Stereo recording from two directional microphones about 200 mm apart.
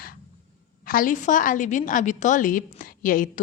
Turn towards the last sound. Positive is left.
turn(degrees=45)  # may be behind; listen again after turning